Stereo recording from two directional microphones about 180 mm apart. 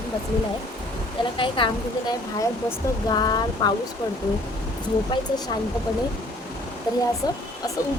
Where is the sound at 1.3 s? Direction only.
30° left (ahead or behind).